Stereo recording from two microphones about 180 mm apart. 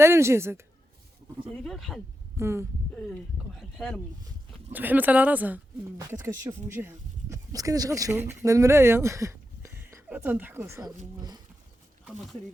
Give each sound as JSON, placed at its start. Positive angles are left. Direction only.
{"t": 0.0, "sound": "speech", "side_deg": -15}
{"t": 1.6, "sound": "speech", "side_deg": 0}
{"t": 2.4, "sound": "speech", "side_deg": -15}
{"t": 3.6, "sound": "speech", "side_deg": 0}
{"t": 12.0, "sound": "speech", "side_deg": 0}